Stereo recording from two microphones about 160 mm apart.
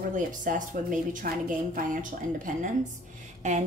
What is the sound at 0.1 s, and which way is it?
A woman's voice, 55° right (ahead or behind).